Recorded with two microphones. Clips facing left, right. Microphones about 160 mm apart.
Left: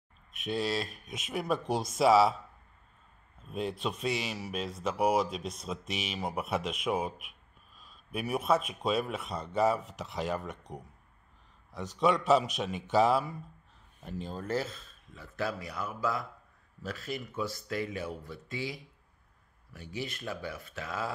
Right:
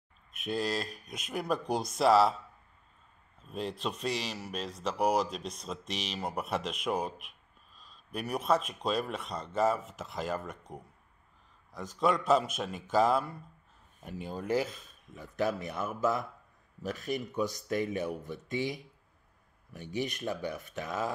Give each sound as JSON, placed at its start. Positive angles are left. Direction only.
{"t": 0.3, "sound": "speech", "side_deg": 0}
{"t": 3.4, "sound": "speech", "side_deg": 5}
{"t": 12.0, "sound": "speech", "side_deg": 0}
{"t": 14.0, "sound": "speech", "side_deg": -10}